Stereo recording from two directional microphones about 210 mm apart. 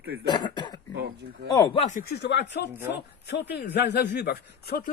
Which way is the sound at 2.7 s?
10° right (ahead or behind).